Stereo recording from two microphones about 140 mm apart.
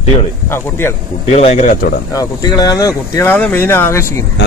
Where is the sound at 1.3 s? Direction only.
50° left (ahead or behind).